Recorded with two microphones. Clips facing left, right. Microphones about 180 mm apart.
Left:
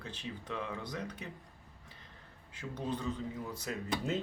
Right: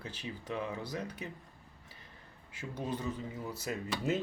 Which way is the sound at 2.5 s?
10° right (ahead or behind).